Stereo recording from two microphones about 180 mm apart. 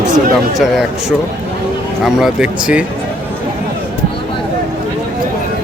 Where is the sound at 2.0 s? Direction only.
5° right (ahead or behind).